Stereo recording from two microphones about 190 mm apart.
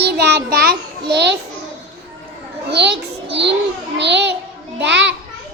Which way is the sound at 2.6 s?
60° right (ahead or behind).